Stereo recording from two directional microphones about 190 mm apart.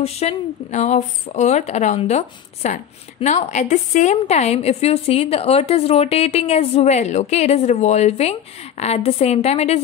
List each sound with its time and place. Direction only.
0.0 s speech: 35° left (ahead or behind)